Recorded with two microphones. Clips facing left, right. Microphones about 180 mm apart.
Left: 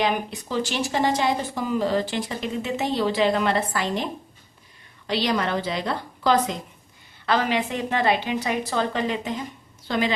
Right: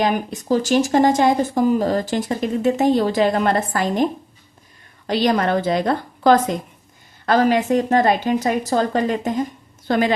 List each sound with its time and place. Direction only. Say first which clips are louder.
0.0 s speech: right 4 dB; 45° right (ahead or behind)